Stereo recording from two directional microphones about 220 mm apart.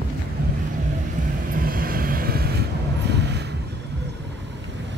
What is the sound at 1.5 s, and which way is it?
Vehicle, 40° right (ahead or behind).